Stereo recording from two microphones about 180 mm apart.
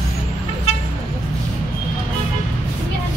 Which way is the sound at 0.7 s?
35° left (ahead or behind).